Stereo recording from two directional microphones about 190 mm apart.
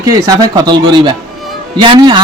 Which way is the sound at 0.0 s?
20° right (ahead or behind).